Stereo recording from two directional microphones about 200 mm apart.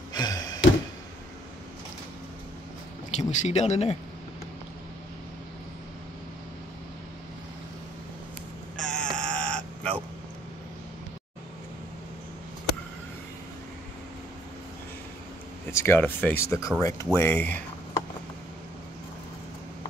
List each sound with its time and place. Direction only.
0.1 s a sound: 20° left (ahead or behind)
3.1 s speech: 35° left (ahead or behind)
8.8 s crow: 5° left (ahead or behind)
15.7 s speech: 10° left (ahead or behind)